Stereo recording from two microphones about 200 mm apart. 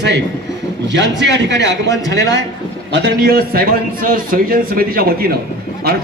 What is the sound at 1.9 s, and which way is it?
Speech, 15° left (ahead or behind).